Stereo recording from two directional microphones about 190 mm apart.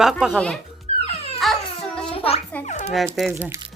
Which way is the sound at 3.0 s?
Centre (ahead or behind).